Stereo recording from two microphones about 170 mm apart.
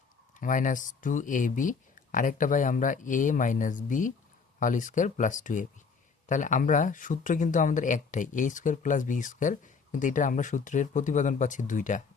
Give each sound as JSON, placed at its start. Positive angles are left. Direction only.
{"t": 0.3, "sound": "speech", "side_deg": 50}